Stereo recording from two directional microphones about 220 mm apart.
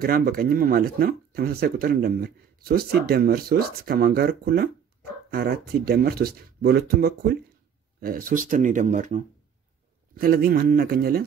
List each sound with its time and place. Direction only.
0.0 s speech: 40° right (ahead or behind)